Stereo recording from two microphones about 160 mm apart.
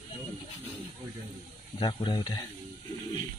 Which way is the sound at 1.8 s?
30° left (ahead or behind).